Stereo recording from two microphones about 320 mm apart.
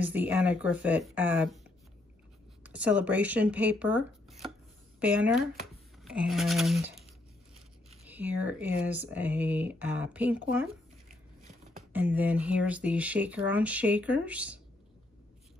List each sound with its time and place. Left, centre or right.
0.0 s speech: centre
2.6 s speech: centre
8.1 s speech: centre
11.9 s speech: centre